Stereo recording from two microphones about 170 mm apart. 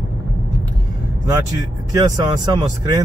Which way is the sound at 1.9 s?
20° right (ahead or behind).